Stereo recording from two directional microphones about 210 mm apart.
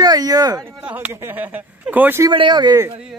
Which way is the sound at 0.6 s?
5° right (ahead or behind).